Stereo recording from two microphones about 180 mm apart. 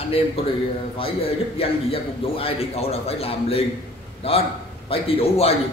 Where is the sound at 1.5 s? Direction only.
30° left (ahead or behind).